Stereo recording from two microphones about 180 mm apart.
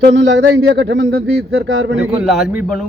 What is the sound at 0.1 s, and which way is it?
Speech, 85° right.